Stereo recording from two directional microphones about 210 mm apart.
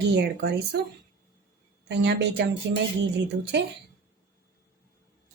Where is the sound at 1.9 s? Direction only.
55° right (ahead or behind).